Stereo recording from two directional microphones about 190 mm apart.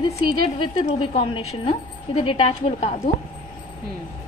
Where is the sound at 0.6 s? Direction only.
30° left (ahead or behind).